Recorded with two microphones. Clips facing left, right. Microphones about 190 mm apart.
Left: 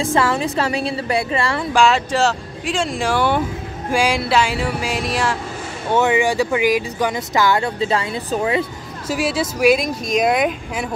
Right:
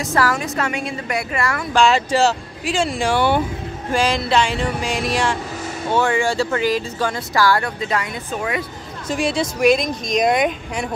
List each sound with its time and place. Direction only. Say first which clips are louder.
0.0 s speech: left 2 dB; 25° left (ahead or behind)
1.7 s speech: right 1 dB; 5° left (ahead or behind)
3.9 s speech: left 1 dB; 10° left (ahead or behind)
5.9 s speech: left 2 dB; 20° left (ahead or behind)
9.0 s speech: even; 5° left (ahead or behind)